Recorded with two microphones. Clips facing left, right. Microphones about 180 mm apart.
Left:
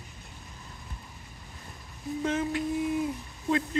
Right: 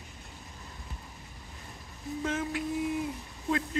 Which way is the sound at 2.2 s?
5° right (ahead or behind).